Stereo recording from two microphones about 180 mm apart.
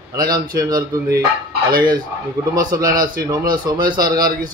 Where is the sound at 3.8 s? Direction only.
50° right (ahead or behind).